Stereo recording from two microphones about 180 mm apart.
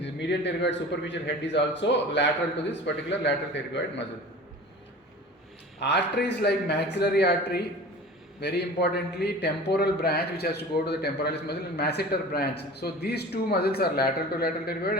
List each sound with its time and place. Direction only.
0.0 s speech: 75° left (ahead or behind)
5.8 s a man's voice: 70° left (ahead or behind)